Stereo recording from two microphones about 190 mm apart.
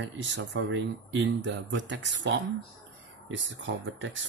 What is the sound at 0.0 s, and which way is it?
Speech, 75° right (ahead or behind).